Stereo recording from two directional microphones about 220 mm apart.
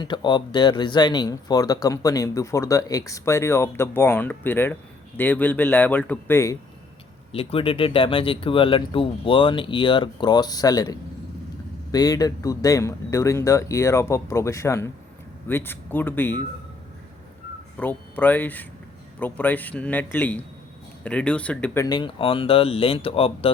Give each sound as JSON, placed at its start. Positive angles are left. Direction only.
{"t": 0.0, "sound": "speech", "side_deg": 20}
{"t": 7.3, "sound": "speech", "side_deg": 25}
{"t": 17.7, "sound": "speech", "side_deg": 10}
{"t": 21.8, "sound": "speech", "side_deg": 20}